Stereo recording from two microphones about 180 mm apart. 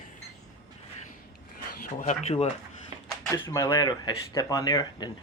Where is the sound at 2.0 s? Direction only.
40° left (ahead or behind).